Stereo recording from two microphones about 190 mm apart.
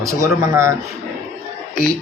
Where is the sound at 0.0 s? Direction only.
15° right (ahead or behind).